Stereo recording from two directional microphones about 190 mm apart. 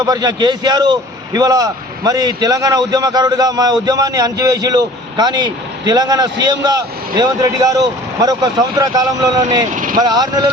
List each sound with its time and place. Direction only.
0.0 s a man's voice: 20° right (ahead or behind)
9.7 s speech: 45° right (ahead or behind)
10.0 s a man's voice: 20° right (ahead or behind)